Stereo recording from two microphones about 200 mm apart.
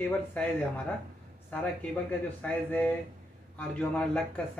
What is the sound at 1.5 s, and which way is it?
Speech, 10° left (ahead or behind).